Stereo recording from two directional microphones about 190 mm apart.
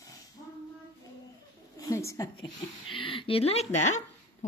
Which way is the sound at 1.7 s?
15° left (ahead or behind).